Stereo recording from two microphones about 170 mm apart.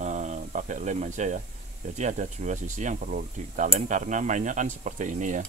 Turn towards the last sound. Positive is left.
turn(degrees=-45)  # may be behind; listen again after turning